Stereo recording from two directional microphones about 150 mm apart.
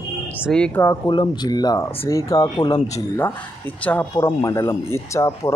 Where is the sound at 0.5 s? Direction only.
5° left (ahead or behind).